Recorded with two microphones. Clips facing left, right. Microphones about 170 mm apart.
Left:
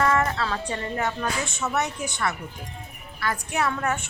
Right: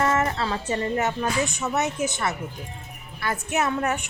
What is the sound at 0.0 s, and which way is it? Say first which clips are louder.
A woman's voice: even; 25° right (ahead or behind).